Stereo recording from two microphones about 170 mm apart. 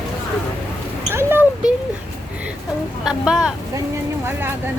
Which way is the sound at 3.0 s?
5° right (ahead or behind).